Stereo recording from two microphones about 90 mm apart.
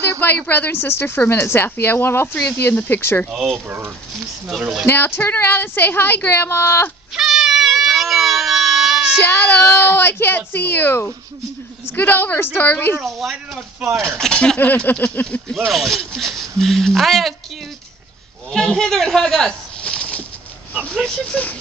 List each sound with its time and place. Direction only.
0.0 s a woman's voice: 25° left (ahead or behind)
3.6 s speech: 20° right (ahead or behind)
4.5 s speech: centre (ahead or behind)
4.8 s speech: 25° left (ahead or behind)
7.2 s a sound: 5° right (ahead or behind)
9.2 s speech: 25° left (ahead or behind)
13.0 s speech: centre (ahead or behind)
14.1 s speech: 10° left (ahead or behind)
14.6 s speech: 20° left (ahead or behind)
15.5 s speech: centre (ahead or behind)
18.5 s speech: 5° left (ahead or behind)